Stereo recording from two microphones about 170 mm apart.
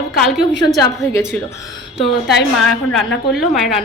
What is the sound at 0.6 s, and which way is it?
Speech, 20° left (ahead or behind).